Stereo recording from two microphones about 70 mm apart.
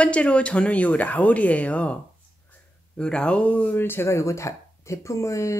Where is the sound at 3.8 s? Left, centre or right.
Left.